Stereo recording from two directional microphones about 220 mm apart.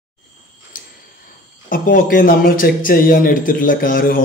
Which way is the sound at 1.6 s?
40° left (ahead or behind).